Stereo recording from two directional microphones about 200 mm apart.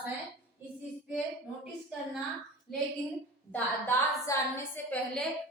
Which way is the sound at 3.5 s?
15° left (ahead or behind).